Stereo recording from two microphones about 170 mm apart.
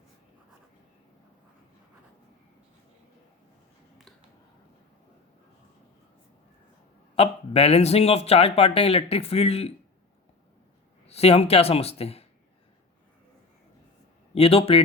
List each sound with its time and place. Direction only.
7.2 s speech: 35° left (ahead or behind)
11.0 s speech: 35° left (ahead or behind)
14.3 s speech: 35° left (ahead or behind)